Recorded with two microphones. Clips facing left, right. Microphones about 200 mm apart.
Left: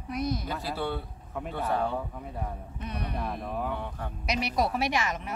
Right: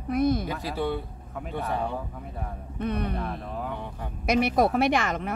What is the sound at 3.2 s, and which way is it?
Speech, 10° left (ahead or behind).